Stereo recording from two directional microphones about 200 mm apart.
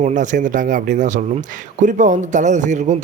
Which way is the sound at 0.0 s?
40° right (ahead or behind).